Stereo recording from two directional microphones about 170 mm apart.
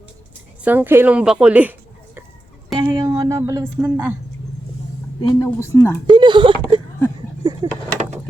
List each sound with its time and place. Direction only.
0.6 s a woman's voice: 10° right (ahead or behind)
2.8 s speech: 20° right (ahead or behind)
5.2 s speech: 25° left (ahead or behind)
6.1 s a sound: 25° right (ahead or behind)